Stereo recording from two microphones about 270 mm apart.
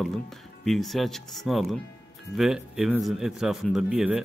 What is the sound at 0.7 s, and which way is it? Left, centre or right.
A man's voice, centre.